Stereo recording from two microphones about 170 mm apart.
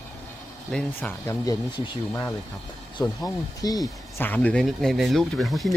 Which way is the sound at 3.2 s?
20° left (ahead or behind).